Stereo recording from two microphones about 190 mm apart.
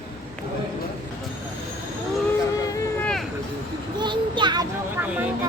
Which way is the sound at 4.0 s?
25° right (ahead or behind).